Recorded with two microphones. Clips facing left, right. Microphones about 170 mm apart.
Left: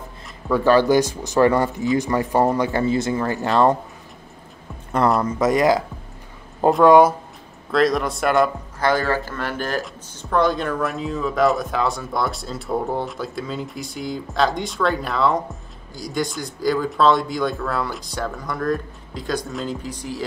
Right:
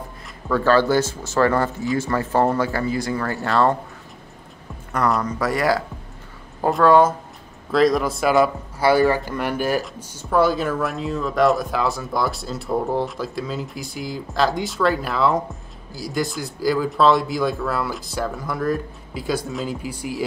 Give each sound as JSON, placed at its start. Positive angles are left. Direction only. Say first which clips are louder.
{"t": 0.5, "sound": "speech", "louder": "left 2 dB", "side_deg": 15}
{"t": 5.2, "sound": "speech", "louder": "left 4 dB", "side_deg": 20}
{"t": 7.7, "sound": "speech", "louder": "right 1 dB", "side_deg": 0}